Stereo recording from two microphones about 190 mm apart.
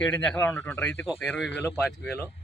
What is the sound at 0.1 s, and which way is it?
A man's voice, 5° left (ahead or behind).